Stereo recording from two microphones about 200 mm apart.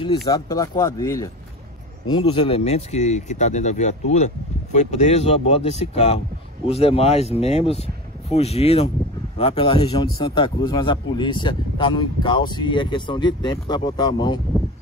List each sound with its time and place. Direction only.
0.0 s speech: 20° left (ahead or behind)